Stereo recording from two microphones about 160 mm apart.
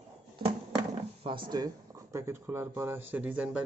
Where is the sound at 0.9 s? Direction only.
30° right (ahead or behind).